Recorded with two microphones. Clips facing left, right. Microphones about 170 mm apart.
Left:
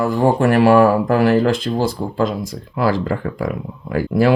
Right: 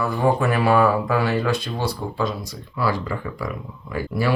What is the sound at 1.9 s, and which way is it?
Speech, 90° left.